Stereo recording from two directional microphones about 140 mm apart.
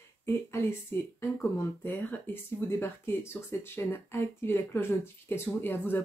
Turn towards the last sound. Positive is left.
turn(degrees=15)  # may be behind; listen again after turning